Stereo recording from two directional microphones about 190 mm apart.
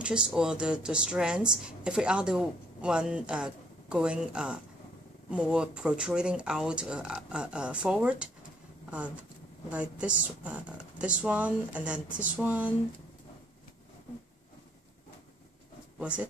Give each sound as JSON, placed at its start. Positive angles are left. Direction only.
{"t": 0.0, "sound": "a woman's voice", "side_deg": -5}
{"t": 16.0, "sound": "speech", "side_deg": -5}